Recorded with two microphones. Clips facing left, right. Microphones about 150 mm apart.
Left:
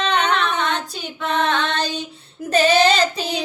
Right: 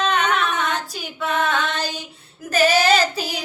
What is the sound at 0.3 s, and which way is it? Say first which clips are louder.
Child singing: left 1 dB; 5° right (ahead or behind).